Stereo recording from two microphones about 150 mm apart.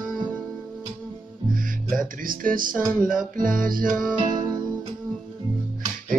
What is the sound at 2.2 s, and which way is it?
Music, 65° right (ahead or behind).